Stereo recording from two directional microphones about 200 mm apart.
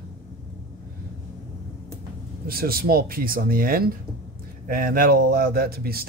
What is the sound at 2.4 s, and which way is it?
Speech, 50° right (ahead or behind).